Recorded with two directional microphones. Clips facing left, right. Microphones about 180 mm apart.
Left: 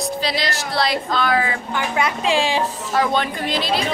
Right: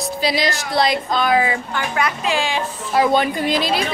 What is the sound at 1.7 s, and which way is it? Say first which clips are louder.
Speech: even; 20° left (ahead or behind).